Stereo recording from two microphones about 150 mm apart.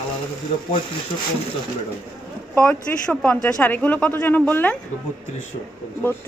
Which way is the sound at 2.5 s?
10° left (ahead or behind).